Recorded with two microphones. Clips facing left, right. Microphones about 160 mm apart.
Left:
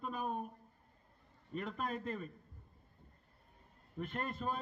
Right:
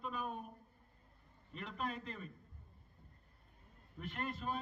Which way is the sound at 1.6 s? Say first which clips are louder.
Left 3 dB; 45° left (ahead or behind).